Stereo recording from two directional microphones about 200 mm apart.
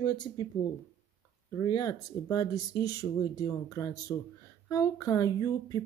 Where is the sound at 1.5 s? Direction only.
20° left (ahead or behind).